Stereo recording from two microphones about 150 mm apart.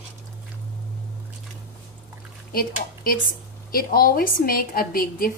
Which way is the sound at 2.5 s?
75° left (ahead or behind).